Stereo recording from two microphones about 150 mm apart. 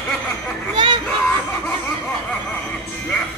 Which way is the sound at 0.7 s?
30° right (ahead or behind).